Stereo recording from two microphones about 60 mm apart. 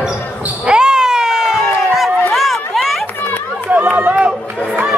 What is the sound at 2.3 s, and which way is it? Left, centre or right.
Run, centre.